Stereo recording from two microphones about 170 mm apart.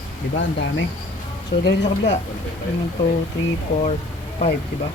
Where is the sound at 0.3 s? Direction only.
90° left.